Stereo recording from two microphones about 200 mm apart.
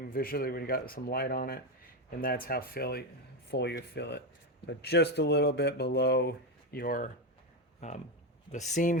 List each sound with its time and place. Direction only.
0.1 s speech: 50° left (ahead or behind)
6.7 s speech: 45° left (ahead or behind)
7.8 s speech: 35° left (ahead or behind)